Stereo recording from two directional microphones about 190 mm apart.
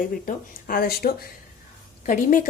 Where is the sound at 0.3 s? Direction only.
50° left (ahead or behind).